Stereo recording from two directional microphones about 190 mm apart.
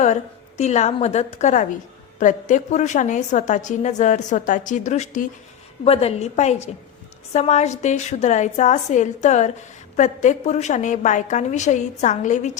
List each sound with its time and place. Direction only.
0.6 s a woman's voice: 35° left (ahead or behind)